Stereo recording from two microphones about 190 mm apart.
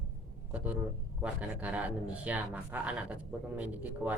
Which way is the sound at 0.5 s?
10° right (ahead or behind).